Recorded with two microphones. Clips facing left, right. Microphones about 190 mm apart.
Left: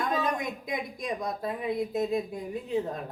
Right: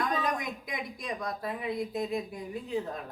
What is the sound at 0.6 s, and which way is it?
A woman's voice, 25° left (ahead or behind).